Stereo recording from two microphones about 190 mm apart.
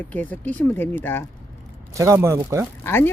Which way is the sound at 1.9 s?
15° right (ahead or behind).